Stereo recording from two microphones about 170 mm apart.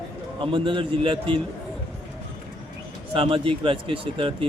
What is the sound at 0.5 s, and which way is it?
Speech, 30° right (ahead or behind).